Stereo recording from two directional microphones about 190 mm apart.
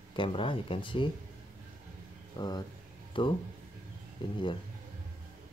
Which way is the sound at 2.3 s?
20° left (ahead or behind).